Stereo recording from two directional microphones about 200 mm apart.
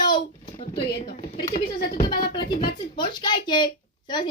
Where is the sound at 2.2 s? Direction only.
20° left (ahead or behind).